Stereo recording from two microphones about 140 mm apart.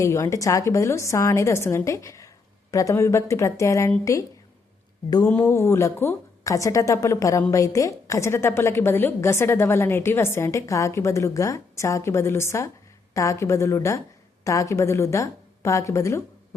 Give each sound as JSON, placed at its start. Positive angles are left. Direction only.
{"t": 0.0, "sound": "a woman's voice", "side_deg": 20}
{"t": 5.3, "sound": "a woman's voice", "side_deg": 15}